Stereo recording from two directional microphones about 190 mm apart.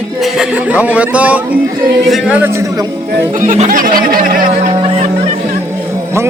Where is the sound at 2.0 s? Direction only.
5° right (ahead or behind).